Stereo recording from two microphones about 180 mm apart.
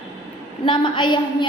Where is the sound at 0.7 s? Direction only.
25° left (ahead or behind).